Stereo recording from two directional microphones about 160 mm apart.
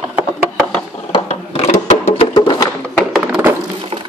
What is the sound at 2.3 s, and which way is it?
Music, 25° left (ahead or behind).